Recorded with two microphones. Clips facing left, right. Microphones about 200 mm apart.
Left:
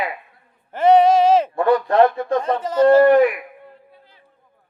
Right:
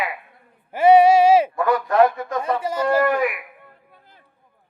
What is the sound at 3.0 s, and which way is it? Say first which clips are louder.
Speech: left 7 dB; 30° left (ahead or behind).